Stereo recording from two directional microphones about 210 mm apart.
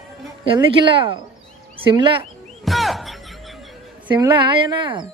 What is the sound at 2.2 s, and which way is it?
Music, centre (ahead or behind).